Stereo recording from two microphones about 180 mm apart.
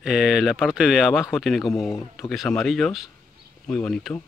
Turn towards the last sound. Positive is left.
turn(degrees=5)  # may be behind; listen again after turning